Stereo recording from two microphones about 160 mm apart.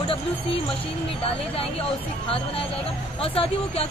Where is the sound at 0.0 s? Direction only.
35° left (ahead or behind).